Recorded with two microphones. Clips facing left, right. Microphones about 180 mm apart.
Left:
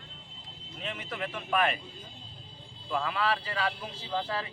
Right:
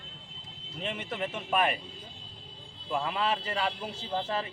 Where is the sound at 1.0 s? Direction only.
25° right (ahead or behind).